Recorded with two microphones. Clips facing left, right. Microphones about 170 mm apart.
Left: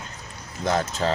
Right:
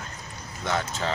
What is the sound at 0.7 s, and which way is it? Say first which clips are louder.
Speech: left 5 dB; 40° left (ahead or behind).